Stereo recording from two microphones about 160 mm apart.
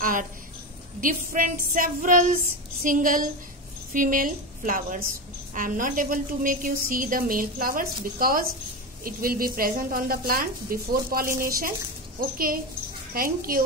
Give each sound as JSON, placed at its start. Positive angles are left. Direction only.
{"t": 0.0, "sound": "a woman's voice", "side_deg": -55}
{"t": 13.1, "sound": "a woman's voice", "side_deg": -65}